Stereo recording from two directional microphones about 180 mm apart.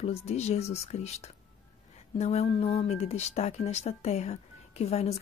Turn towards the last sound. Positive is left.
turn(degrees=35)  # may be behind; listen again after turning